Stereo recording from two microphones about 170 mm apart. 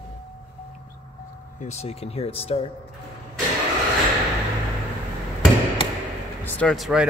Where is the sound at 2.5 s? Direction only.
35° left (ahead or behind).